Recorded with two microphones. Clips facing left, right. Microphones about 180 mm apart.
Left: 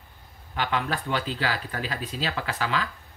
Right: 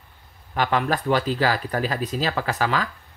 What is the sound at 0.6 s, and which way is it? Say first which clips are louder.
Speech: right 5 dB; 45° right (ahead or behind).